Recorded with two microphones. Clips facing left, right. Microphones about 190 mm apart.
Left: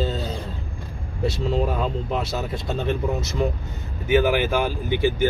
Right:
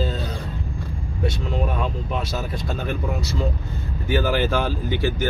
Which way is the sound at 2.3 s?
25° left (ahead or behind).